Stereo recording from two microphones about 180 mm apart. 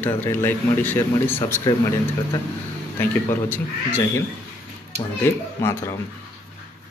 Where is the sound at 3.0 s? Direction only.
10° left (ahead or behind).